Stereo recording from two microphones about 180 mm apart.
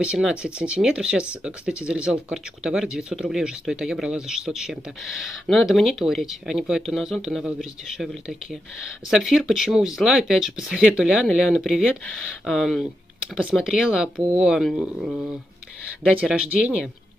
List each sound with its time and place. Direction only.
0.0 s speech: 5° right (ahead or behind)
16.3 s speech: 5° right (ahead or behind)